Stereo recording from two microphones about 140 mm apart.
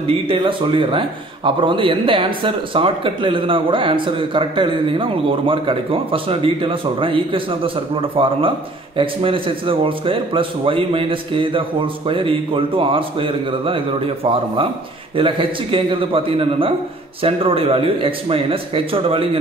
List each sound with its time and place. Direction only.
0.0 s a man's voice: 40° right (ahead or behind)